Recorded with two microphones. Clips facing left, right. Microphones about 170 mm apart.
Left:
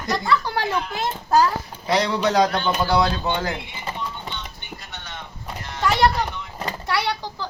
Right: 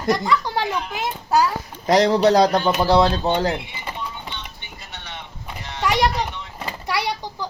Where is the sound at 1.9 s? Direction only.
40° right (ahead or behind).